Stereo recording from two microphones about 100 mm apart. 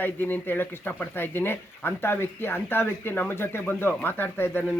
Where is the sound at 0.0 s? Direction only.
20° left (ahead or behind).